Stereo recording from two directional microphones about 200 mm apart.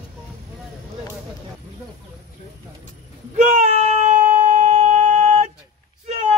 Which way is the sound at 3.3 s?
35° right (ahead or behind).